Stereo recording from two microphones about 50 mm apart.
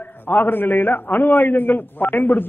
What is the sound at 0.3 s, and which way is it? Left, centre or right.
A man's voice, left.